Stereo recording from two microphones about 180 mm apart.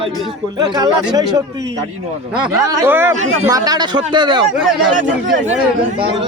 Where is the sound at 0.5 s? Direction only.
25° right (ahead or behind).